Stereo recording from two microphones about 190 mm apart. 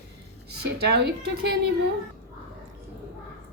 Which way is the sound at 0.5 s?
60° right (ahead or behind).